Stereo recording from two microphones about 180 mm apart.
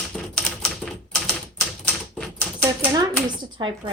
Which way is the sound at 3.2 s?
25° right (ahead or behind).